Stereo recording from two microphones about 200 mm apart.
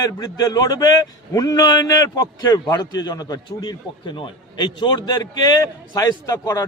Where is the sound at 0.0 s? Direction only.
20° left (ahead or behind).